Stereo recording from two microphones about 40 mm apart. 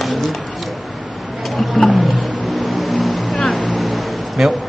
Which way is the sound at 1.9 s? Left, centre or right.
Centre.